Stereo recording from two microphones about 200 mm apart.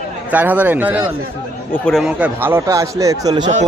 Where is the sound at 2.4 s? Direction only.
15° right (ahead or behind).